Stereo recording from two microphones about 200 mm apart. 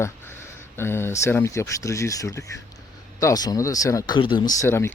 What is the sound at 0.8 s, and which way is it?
Speech, 10° left (ahead or behind).